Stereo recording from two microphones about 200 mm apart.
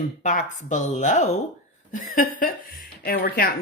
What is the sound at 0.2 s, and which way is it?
Speech, 40° left (ahead or behind).